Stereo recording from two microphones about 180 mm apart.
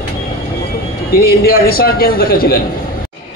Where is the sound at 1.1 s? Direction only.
55° left (ahead or behind).